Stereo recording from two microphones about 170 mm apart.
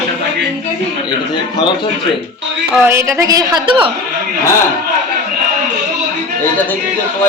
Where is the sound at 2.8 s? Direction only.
15° right (ahead or behind).